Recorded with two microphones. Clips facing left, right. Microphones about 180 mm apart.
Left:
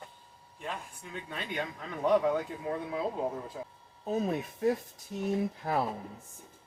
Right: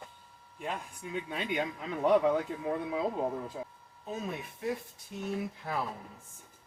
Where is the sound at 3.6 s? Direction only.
Centre (ahead or behind).